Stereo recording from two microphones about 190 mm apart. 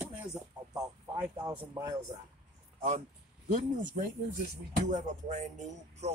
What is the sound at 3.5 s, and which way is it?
Speech, 45° right (ahead or behind).